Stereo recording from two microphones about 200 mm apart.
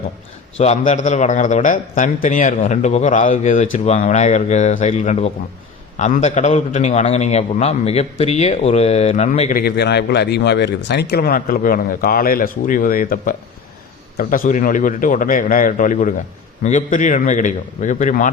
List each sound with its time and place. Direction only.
0.6 s a man's voice: 35° left (ahead or behind)
9.6 s a man's voice: 55° left (ahead or behind)